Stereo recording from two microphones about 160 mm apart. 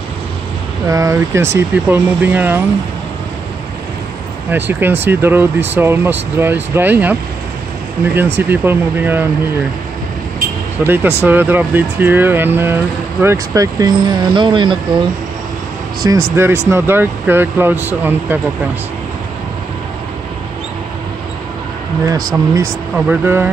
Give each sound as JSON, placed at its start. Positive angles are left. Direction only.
{"t": 0.8, "sound": "speech", "side_deg": -20}
{"t": 4.5, "sound": "speech", "side_deg": -10}
{"t": 10.8, "sound": "speech", "side_deg": -15}
{"t": 16.0, "sound": "speech", "side_deg": -20}
{"t": 22.0, "sound": "speech", "side_deg": -20}
{"t": 22.9, "sound": "speech", "side_deg": -10}